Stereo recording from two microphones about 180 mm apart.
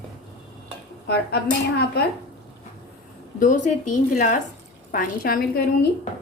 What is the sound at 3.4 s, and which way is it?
A woman's voice, 45° left (ahead or behind).